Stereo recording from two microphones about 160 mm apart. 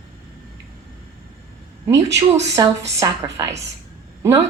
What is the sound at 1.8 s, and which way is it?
A woman's voice, 20° right (ahead or behind).